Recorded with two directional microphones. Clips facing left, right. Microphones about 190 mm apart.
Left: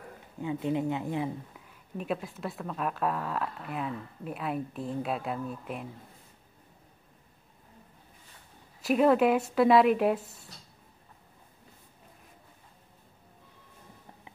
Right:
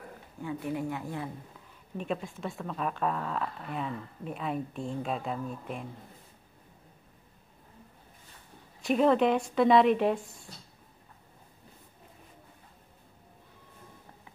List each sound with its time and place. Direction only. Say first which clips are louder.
0.4 s a woman's voice: left 4 dB; 20° left (ahead or behind)
2.0 s a woman's voice: left 1 dB; centre (ahead or behind)
8.8 s a woman's voice: left 1 dB; 5° left (ahead or behind)